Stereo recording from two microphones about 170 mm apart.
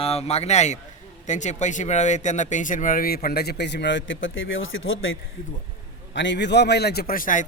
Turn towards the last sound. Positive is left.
turn(degrees=55)  # may be behind; listen again after turning